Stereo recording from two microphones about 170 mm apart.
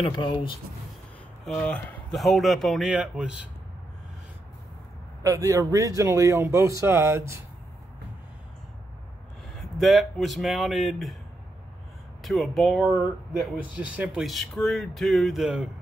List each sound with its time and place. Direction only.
0.0 s speech: 30° left (ahead or behind)
1.4 s speech: 5° left (ahead or behind)
5.2 s speech: 20° right (ahead or behind)
9.6 s speech: centre (ahead or behind)
12.2 s speech: centre (ahead or behind)